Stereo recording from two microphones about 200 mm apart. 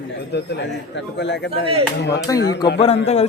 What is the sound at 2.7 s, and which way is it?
Speech, 30° left (ahead or behind).